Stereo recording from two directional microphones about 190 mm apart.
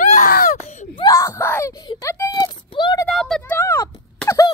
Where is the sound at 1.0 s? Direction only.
15° left (ahead or behind).